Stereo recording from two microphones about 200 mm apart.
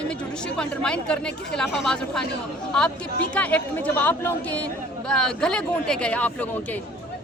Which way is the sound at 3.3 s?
5° left (ahead or behind).